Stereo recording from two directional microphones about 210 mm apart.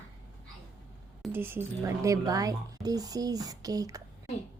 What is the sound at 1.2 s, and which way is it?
Speech, 10° right (ahead or behind).